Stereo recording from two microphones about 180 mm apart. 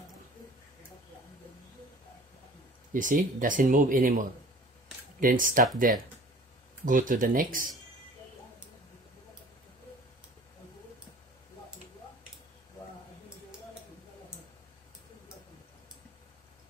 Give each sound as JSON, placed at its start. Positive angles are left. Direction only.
{"t": 2.9, "sound": "speech", "side_deg": -45}
{"t": 6.9, "sound": "speech", "side_deg": -50}